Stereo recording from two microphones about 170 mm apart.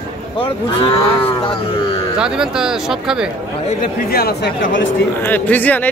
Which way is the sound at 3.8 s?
65° left (ahead or behind).